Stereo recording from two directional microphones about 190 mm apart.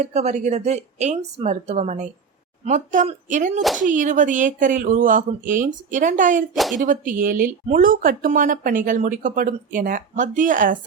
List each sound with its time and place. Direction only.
0.0 s speech: 35° right (ahead or behind)
6.5 s speech: centre (ahead or behind)
6.7 s speech: 45° right (ahead or behind)